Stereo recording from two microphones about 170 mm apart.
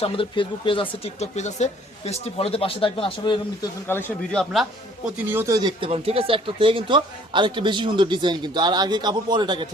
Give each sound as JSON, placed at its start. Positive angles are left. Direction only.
{"t": 0.0, "sound": "speech", "side_deg": 30}
{"t": 3.8, "sound": "speech", "side_deg": 10}
{"t": 5.0, "sound": "speech", "side_deg": -10}
{"t": 5.5, "sound": "speech", "side_deg": -25}
{"t": 5.9, "sound": "speech", "side_deg": -35}